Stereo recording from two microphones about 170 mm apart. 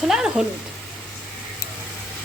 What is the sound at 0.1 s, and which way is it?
Speech, 5° right (ahead or behind).